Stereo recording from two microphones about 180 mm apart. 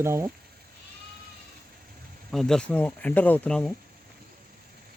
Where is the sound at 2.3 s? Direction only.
Centre (ahead or behind).